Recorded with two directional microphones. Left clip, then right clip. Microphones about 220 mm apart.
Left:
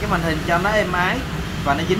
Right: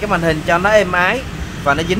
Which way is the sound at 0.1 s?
50° right (ahead or behind).